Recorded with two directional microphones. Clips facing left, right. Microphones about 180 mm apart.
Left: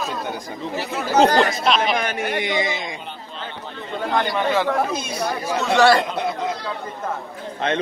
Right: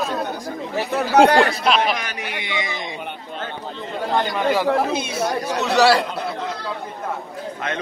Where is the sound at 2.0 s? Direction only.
50° left (ahead or behind).